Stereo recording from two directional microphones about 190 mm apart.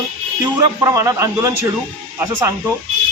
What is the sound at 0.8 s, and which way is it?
Speech, 15° right (ahead or behind).